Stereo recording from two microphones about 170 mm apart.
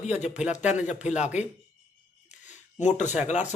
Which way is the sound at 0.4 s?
5° right (ahead or behind).